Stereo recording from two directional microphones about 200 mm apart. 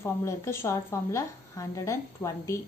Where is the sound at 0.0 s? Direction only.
15° left (ahead or behind).